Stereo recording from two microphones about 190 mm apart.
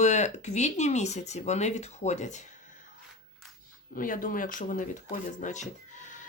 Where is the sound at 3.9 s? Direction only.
45° left (ahead or behind).